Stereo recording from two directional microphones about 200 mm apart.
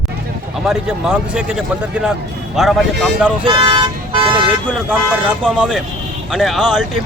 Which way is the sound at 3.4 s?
25° right (ahead or behind).